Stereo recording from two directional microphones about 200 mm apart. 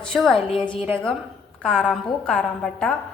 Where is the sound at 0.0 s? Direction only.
Centre (ahead or behind).